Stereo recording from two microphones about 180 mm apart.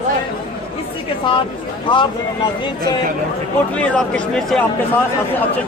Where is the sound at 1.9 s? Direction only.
25° left (ahead or behind).